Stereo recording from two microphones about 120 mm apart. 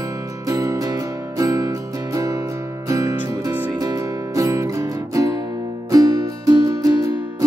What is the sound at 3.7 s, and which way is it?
Music, 30° right (ahead or behind).